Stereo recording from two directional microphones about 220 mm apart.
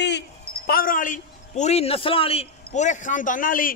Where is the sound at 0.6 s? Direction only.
40° left (ahead or behind).